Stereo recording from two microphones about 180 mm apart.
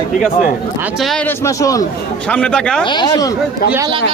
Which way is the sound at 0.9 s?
Centre (ahead or behind).